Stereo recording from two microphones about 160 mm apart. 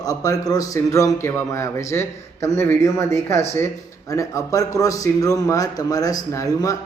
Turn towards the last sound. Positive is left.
turn(degrees=20)  # may be behind; listen again after turning